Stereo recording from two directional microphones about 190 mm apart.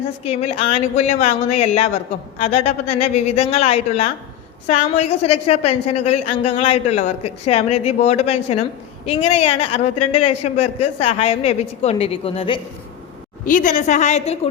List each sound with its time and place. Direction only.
0.3 s a woman's voice: 30° left (ahead or behind)
13.4 s a woman's voice: 45° left (ahead or behind)